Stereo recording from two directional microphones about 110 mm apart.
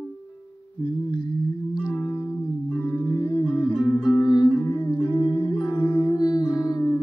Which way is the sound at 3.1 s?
45° left (ahead or behind).